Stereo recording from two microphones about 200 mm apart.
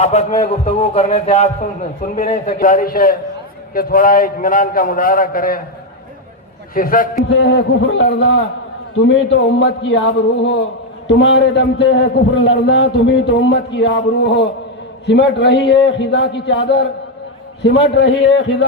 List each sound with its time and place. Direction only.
0.0 s a man's voice: 35° left (ahead or behind)
6.7 s a man's voice: 45° left (ahead or behind); by 16.8 s 60° left (ahead or behind)
17.9 s a man's voice: 60° left (ahead or behind)